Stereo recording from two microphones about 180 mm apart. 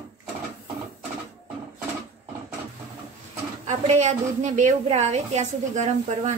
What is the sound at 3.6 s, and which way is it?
A woman's voice, 40° right (ahead or behind).